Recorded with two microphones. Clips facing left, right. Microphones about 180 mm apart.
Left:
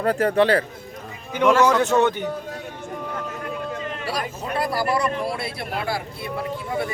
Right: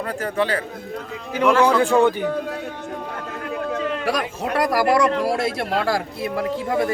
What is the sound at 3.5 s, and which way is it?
Speech, 75° right (ahead or behind).